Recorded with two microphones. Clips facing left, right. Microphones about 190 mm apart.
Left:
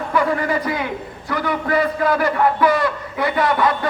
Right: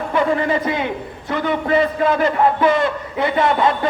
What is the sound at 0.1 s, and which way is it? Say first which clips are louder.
A man's voice: right 2 dB; 25° right (ahead or behind).